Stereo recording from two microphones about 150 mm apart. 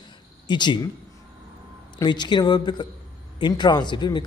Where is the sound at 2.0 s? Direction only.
30° left (ahead or behind).